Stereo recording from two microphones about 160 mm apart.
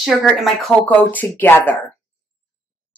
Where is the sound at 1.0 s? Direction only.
10° left (ahead or behind).